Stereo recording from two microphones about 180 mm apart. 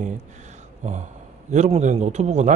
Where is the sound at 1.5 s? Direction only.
40° right (ahead or behind).